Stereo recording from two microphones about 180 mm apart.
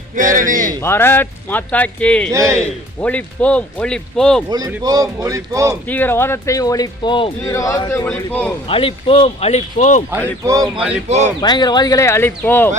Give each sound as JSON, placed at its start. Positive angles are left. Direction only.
{"t": 0.2, "sound": "speech", "side_deg": -45}
{"t": 0.8, "sound": "speech", "side_deg": 15}
{"t": 2.3, "sound": "a man's voice", "side_deg": -15}
{"t": 3.0, "sound": "speech", "side_deg": 5}
{"t": 4.4, "sound": "speech", "side_deg": -20}
{"t": 5.9, "sound": "speech", "side_deg": 10}
{"t": 8.6, "sound": "a man's voice", "side_deg": 30}
{"t": 10.4, "sound": "a man's voice", "side_deg": -20}
{"t": 10.8, "sound": "a man's voice", "side_deg": -5}
{"t": 11.3, "sound": "speech", "side_deg": 25}